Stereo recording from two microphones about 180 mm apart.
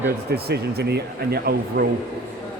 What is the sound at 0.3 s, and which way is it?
Speech, 60° right (ahead or behind).